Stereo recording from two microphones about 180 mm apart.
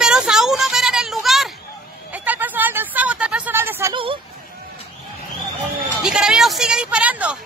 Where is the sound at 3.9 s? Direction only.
30° right (ahead or behind).